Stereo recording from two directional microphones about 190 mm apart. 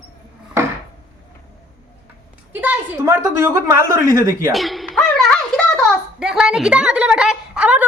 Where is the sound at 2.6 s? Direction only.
10° right (ahead or behind).